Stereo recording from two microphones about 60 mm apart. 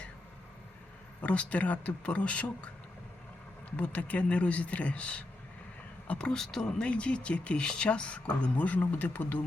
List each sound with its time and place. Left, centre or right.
1.2 s speech: left
3.7 s speech: left